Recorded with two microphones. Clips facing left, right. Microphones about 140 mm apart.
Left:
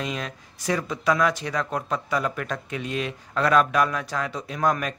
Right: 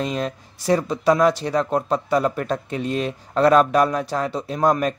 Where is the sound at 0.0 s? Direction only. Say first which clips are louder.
Right 6 dB; 35° right (ahead or behind).